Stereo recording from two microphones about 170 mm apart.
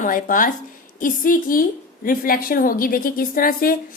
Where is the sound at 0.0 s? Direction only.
50° left (ahead or behind).